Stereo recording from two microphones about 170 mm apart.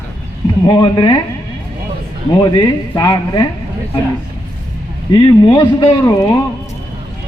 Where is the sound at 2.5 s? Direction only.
25° left (ahead or behind).